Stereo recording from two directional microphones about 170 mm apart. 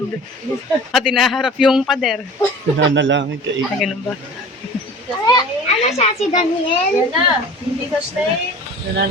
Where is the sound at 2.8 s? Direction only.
90° right.